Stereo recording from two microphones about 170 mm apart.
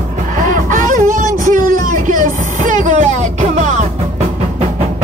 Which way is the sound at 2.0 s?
50° right (ahead or behind).